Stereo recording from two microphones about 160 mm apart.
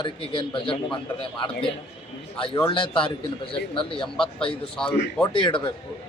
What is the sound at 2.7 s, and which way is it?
A man's voice, 35° left (ahead or behind).